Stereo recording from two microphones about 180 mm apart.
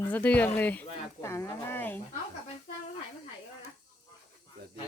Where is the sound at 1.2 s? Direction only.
15° left (ahead or behind).